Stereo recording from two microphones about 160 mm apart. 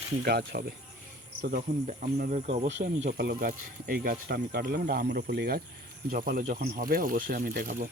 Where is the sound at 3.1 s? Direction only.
75° right (ahead or behind).